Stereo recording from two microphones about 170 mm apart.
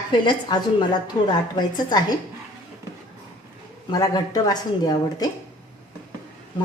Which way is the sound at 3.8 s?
25° left (ahead or behind).